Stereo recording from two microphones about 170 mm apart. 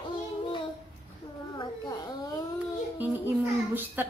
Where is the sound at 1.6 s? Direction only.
25° left (ahead or behind).